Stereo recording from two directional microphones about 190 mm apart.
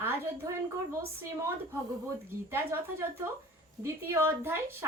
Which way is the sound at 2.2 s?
15° right (ahead or behind).